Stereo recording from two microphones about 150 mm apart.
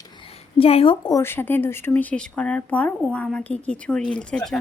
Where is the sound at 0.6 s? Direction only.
40° left (ahead or behind).